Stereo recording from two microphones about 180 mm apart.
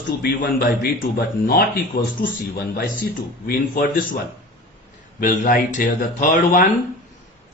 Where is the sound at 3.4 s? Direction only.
55° left (ahead or behind).